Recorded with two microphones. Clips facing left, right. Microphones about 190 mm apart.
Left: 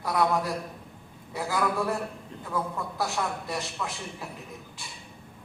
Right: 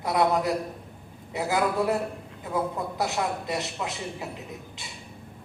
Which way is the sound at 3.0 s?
20° right (ahead or behind).